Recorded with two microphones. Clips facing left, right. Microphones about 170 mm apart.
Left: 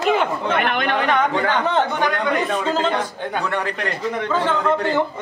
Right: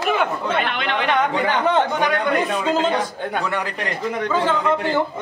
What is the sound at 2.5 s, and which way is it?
A man's voice, 10° right (ahead or behind).